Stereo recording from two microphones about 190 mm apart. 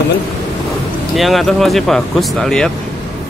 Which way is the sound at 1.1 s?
Centre (ahead or behind).